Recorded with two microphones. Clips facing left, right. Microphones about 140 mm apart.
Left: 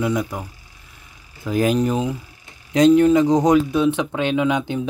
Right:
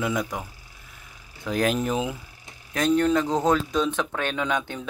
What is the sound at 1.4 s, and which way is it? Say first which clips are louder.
Speech: left 5 dB; centre (ahead or behind).